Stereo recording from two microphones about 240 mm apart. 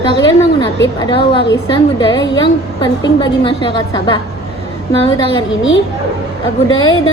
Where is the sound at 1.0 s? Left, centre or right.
Centre.